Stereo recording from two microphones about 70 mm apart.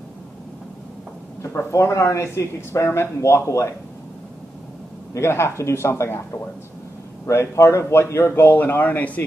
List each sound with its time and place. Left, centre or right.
1.4 s speech: left
5.1 s speech: left